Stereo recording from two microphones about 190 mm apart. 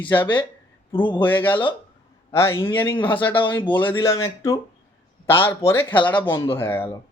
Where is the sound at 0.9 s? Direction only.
25° left (ahead or behind).